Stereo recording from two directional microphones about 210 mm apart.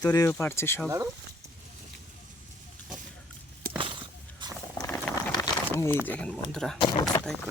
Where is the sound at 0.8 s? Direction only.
15° right (ahead or behind).